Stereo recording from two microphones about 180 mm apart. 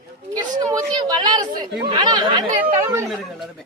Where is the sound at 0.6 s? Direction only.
20° right (ahead or behind).